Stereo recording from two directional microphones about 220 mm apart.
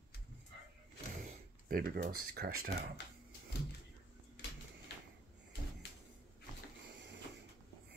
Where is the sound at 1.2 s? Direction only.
40° right (ahead or behind).